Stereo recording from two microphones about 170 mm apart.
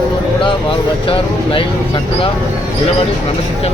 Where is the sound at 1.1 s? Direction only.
30° left (ahead or behind).